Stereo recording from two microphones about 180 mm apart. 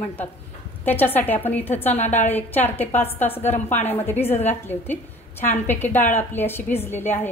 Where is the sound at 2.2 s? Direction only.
10° left (ahead or behind).